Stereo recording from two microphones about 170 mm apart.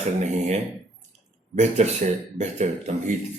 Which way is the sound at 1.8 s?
40° right (ahead or behind).